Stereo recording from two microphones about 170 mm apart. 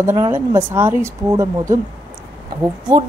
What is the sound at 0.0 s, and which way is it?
A woman's voice, 15° right (ahead or behind).